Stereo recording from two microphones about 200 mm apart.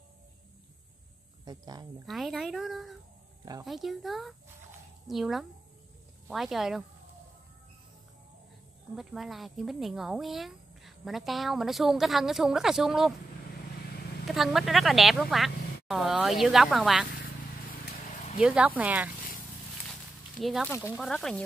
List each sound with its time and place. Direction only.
1.4 s speech: 20° right (ahead or behind)
2.0 s speech: centre (ahead or behind)
8.9 s speech: centre (ahead or behind)
14.2 s speech: centre (ahead or behind)
18.4 s speech: 5° right (ahead or behind)
19.9 s a sound: centre (ahead or behind)
20.8 s speech: centre (ahead or behind)